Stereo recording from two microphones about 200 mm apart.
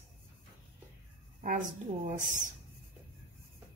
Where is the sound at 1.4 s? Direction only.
40° right (ahead or behind).